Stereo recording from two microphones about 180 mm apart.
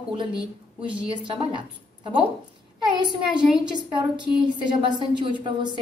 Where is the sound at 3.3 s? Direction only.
25° right (ahead or behind).